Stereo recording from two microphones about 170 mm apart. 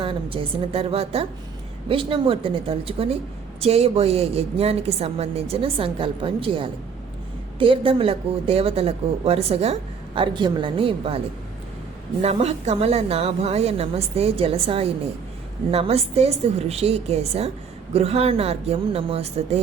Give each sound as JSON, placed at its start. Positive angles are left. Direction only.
{"t": 0.0, "sound": "a woman's voice", "side_deg": -30}
{"t": 10.2, "sound": "a woman's voice", "side_deg": -25}
{"t": 12.2, "sound": "a woman's voice", "side_deg": -40}